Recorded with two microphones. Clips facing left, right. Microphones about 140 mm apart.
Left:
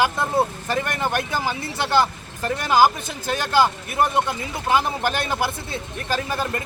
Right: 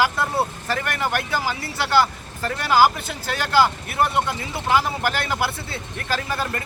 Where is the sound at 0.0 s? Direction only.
20° left (ahead or behind).